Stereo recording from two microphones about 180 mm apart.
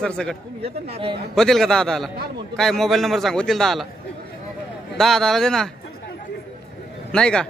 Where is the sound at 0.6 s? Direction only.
30° right (ahead or behind).